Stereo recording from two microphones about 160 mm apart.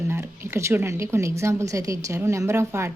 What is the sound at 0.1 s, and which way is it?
Speech, 15° right (ahead or behind).